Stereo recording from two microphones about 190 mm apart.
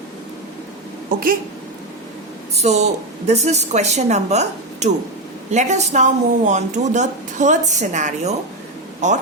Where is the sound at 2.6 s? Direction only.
35° right (ahead or behind).